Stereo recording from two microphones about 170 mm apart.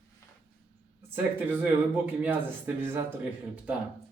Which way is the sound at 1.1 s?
10° right (ahead or behind).